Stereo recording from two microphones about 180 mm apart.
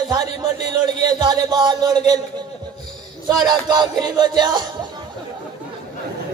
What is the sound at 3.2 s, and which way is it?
A man's voice, 25° right (ahead or behind).